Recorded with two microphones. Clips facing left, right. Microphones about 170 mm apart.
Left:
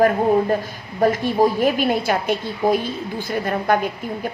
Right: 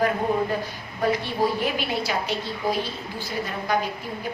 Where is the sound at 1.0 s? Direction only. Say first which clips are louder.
Left 6 dB; 45° left (ahead or behind).